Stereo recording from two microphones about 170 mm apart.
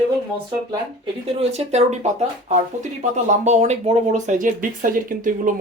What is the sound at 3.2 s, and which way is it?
Speech, 45° right (ahead or behind).